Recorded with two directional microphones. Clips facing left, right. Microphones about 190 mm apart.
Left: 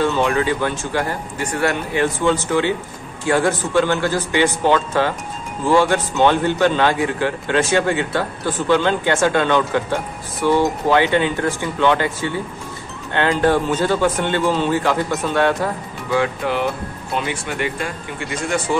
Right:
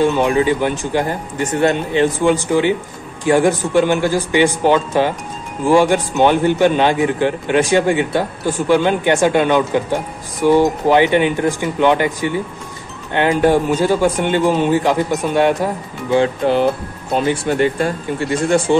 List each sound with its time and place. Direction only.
0.0 s a man's voice: 15° right (ahead or behind)
16.2 s speech: 30° right (ahead or behind)